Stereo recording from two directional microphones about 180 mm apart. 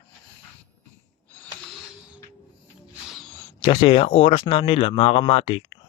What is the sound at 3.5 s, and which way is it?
Speech, 25° left (ahead or behind).